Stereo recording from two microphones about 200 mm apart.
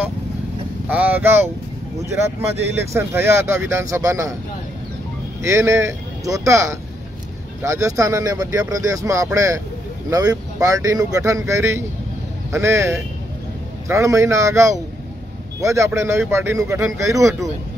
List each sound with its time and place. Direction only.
0.8 s speech: 10° right (ahead or behind)
2.7 s speech: 15° right (ahead or behind)
5.4 s speech: 15° right (ahead or behind)